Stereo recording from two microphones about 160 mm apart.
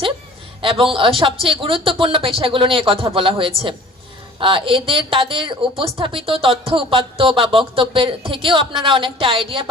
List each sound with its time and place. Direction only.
0.6 s a man's voice: 35° right (ahead or behind)